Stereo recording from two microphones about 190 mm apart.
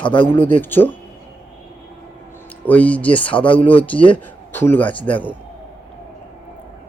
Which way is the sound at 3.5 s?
30° left (ahead or behind).